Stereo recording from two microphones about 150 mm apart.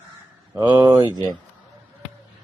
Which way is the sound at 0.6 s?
30° right (ahead or behind).